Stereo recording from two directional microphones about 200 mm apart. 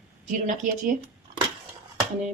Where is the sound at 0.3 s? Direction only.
40° right (ahead or behind).